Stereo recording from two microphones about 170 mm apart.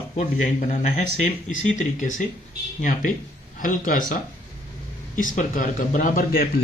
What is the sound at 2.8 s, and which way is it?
Speech, 50° left (ahead or behind).